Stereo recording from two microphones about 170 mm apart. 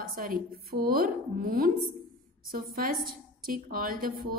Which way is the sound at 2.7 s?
60° right (ahead or behind).